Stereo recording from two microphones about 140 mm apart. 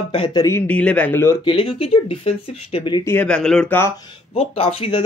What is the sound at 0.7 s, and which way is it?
Speech, 10° left (ahead or behind).